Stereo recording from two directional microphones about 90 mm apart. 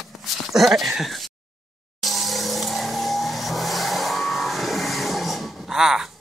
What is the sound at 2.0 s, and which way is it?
Vehicle, centre (ahead or behind).